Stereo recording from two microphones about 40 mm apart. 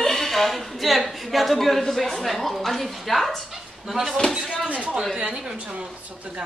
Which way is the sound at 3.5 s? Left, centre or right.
Centre.